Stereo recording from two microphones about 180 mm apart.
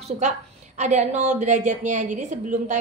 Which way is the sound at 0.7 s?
40° right (ahead or behind).